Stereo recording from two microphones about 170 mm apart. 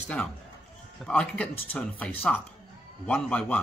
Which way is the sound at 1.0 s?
5° left (ahead or behind).